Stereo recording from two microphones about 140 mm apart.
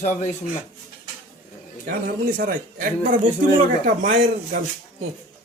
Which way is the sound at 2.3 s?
90° right.